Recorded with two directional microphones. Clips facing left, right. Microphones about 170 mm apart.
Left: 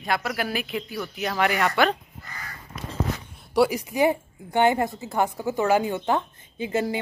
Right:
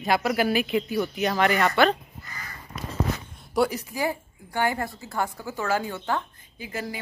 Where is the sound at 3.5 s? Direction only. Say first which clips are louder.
Left 3 dB; 5° left (ahead or behind).